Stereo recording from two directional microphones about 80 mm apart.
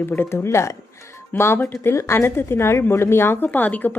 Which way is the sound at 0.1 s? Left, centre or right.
Left.